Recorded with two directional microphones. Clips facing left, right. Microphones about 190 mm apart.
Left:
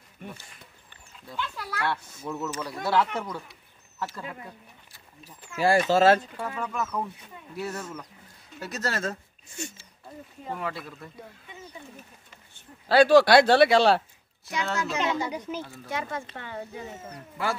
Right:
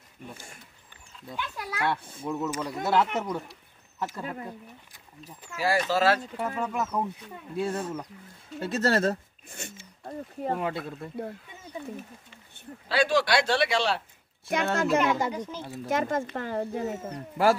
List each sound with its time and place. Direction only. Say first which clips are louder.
1.3 s speech: left 1 dB; 20° right (ahead or behind)
4.2 s speech: right 3 dB; 40° right (ahead or behind)
4.5 s speech: right 5 dB; 20° right (ahead or behind)
5.6 s speech: left 4 dB; 25° left (ahead or behind)
6.5 s speech: right 1 dB; 25° right (ahead or behind)
9.5 s speech: left 4 dB; 55° right (ahead or behind)
10.5 s speech: right 2 dB; 25° right (ahead or behind)
12.8 s speech: left 7 dB; 40° left (ahead or behind)
14.5 s speech: right 5 dB; 55° right (ahead or behind)